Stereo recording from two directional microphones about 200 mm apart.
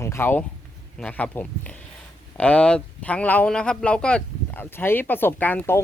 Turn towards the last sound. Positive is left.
turn(degrees=10)  # may be behind; listen again after turning